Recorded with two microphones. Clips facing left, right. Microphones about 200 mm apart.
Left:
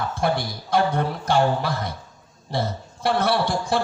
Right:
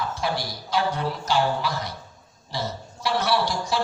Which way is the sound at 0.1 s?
55° left (ahead or behind).